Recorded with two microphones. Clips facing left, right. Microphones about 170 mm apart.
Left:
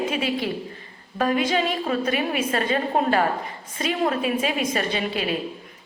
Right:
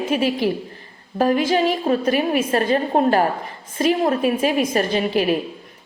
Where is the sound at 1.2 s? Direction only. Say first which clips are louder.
Right 4 dB; 40° right (ahead or behind).